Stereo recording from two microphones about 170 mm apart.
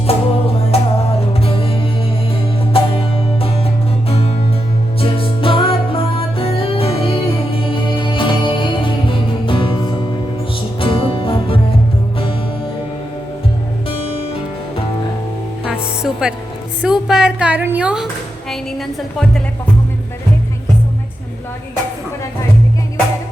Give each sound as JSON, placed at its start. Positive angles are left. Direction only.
{"t": 0.1, "sound": "music", "side_deg": 35}
{"t": 2.8, "sound": "music", "side_deg": 35}
{"t": 4.1, "sound": "music", "side_deg": 35}
{"t": 13.8, "sound": "music", "side_deg": 35}
{"t": 15.6, "sound": "music", "side_deg": -5}
{"t": 16.8, "sound": "a sound", "side_deg": -5}